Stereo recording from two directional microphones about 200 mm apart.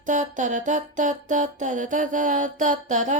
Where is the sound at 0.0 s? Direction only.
40° right (ahead or behind).